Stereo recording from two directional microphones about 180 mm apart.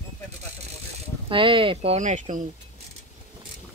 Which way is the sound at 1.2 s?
30° right (ahead or behind).